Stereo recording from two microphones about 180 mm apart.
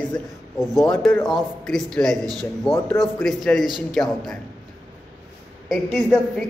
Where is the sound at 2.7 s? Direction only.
30° left (ahead or behind).